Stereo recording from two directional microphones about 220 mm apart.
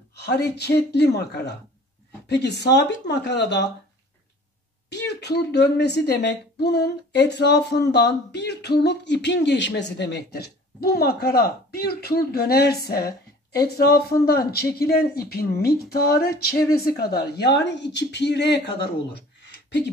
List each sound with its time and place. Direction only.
0.1 s a woman's voice: 50° left (ahead or behind)
4.8 s a woman's voice: 50° left (ahead or behind)